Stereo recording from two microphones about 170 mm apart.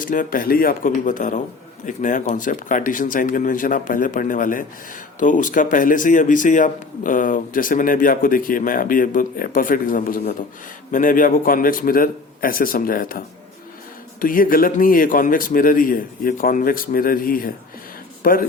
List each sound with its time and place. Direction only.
0.0 s a man's voice: 55° left (ahead or behind)